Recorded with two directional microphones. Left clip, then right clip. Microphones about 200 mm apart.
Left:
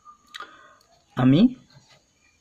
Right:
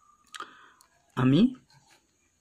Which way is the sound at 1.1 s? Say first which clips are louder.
Left 5 dB; 45° right (ahead or behind).